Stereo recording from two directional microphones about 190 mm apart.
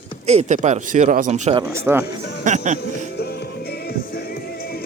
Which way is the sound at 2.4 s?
40° right (ahead or behind).